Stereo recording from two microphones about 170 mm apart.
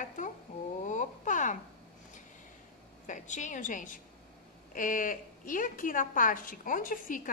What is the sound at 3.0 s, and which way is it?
A woman's voice, 45° left (ahead or behind).